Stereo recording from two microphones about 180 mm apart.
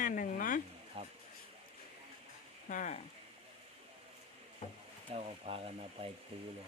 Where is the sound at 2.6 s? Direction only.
45° left (ahead or behind).